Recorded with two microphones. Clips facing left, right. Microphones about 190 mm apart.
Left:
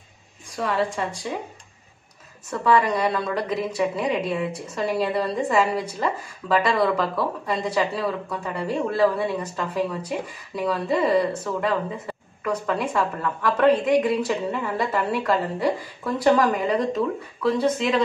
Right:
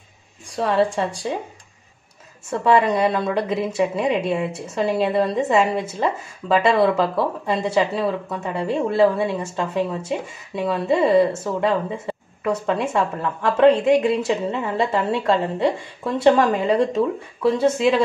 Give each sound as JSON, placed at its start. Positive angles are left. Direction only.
{"t": 0.6, "sound": "speech", "side_deg": -30}
{"t": 2.5, "sound": "speech", "side_deg": -25}